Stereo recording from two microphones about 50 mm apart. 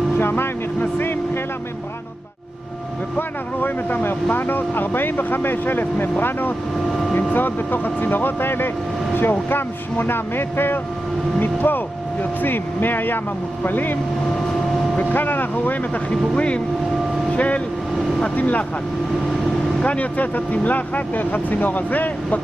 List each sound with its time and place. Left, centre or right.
0.2 s vehicle: left
3.2 s speech: left
6.9 s vehicle: centre
7.3 s speech: left
15.0 s speech: left
16.1 s speech: left
17.3 s vehicle: left
18.3 s speech: left
19.8 s speech: left